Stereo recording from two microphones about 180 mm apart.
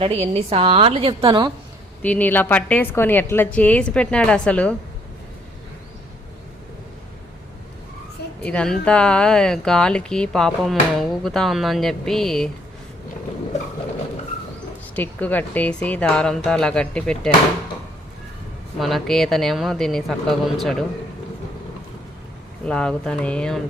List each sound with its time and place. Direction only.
0.0 s a woman's voice: 35° right (ahead or behind)
2.0 s a woman's voice: 10° left (ahead or behind)
8.4 s speech: 5° left (ahead or behind)
14.9 s speech: 10° left (ahead or behind)
18.8 s speech: centre (ahead or behind)
22.6 s speech: 5° left (ahead or behind)